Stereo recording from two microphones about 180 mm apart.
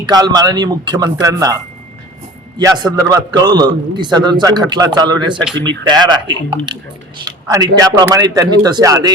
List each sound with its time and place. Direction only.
0.0 s a man's voice: 20° right (ahead or behind)
2.6 s a man's voice: 20° right (ahead or behind)